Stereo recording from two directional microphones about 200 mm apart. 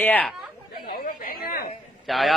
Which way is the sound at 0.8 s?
45° left (ahead or behind).